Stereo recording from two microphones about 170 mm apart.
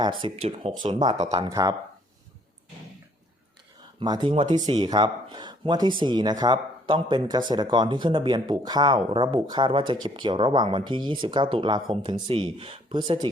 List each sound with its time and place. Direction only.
0.0 s speech: 30° right (ahead or behind)
1.2 s speech: 40° right (ahead or behind)
1.5 s speech: 20° right (ahead or behind)
4.0 s speech: 25° right (ahead or behind)